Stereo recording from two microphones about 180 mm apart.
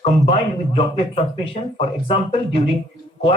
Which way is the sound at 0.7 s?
30° left (ahead or behind).